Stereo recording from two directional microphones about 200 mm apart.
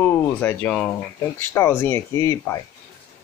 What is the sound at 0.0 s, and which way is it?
Speech, 10° left (ahead or behind).